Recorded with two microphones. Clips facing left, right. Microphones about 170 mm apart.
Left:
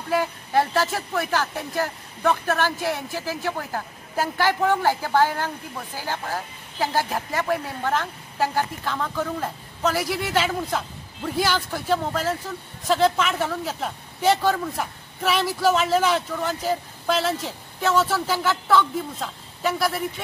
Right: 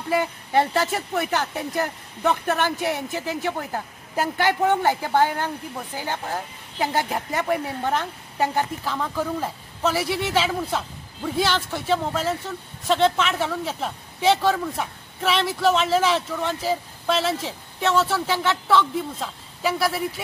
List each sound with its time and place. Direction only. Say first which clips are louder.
0.1 s speech: even; 20° right (ahead or behind)
8.8 s speech: right 1 dB; 5° right (ahead or behind)